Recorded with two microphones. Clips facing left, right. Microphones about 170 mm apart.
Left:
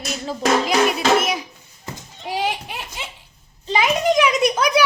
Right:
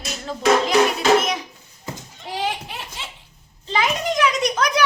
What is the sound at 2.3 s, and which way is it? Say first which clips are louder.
A child's voice: left 2 dB; 15° left (ahead or behind).